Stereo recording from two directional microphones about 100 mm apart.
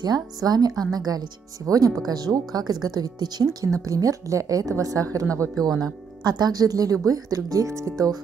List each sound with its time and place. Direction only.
0.0 s speech: 40° right (ahead or behind)